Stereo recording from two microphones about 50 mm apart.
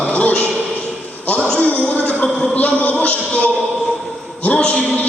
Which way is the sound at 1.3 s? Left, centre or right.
Left.